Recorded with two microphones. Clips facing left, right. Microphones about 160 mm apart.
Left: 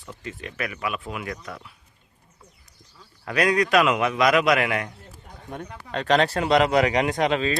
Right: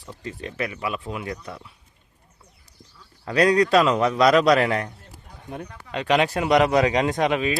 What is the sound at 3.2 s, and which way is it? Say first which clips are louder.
A man's voice: right 3 dB; 30° right (ahead or behind).